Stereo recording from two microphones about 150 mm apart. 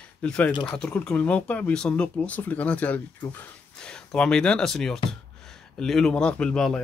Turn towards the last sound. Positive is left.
turn(degrees=5)  # may be behind; listen again after turning